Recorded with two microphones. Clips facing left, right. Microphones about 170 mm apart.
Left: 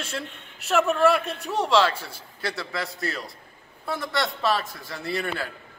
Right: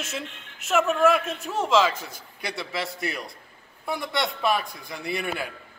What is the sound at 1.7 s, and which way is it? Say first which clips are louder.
A man's voice: even; 10° right (ahead or behind).